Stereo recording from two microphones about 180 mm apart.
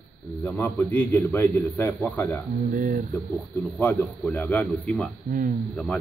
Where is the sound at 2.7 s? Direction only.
45° right (ahead or behind).